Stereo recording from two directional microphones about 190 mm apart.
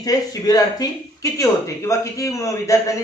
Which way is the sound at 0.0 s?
20° left (ahead or behind).